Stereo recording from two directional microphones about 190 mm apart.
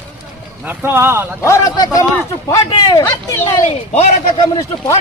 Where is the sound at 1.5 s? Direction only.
20° left (ahead or behind).